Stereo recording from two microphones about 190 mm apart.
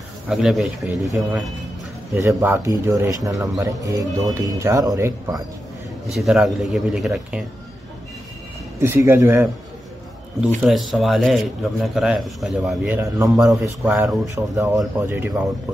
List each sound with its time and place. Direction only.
0.3 s a man's voice: centre (ahead or behind)
2.1 s speech: 15° right (ahead or behind)
6.0 s a man's voice: centre (ahead or behind)
8.7 s speech: 10° right (ahead or behind)
10.6 s a man's voice: centre (ahead or behind)